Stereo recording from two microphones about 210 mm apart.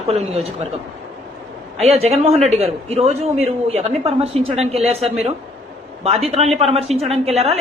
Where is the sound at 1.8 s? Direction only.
30° right (ahead or behind).